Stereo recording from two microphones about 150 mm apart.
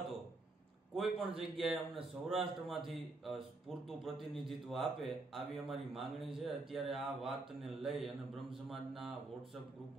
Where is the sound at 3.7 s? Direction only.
Centre (ahead or behind).